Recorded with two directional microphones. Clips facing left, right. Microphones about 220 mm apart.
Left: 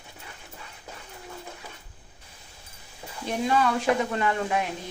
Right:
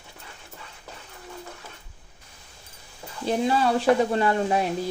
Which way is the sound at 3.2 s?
30° right (ahead or behind).